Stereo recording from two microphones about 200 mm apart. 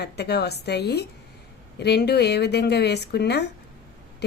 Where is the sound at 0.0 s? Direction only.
55° left (ahead or behind).